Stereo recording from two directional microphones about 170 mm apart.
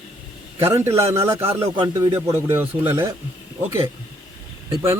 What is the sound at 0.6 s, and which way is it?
Speech, 15° right (ahead or behind).